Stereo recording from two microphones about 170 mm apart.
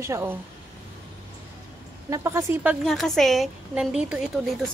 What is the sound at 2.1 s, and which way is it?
Speech, 15° right (ahead or behind).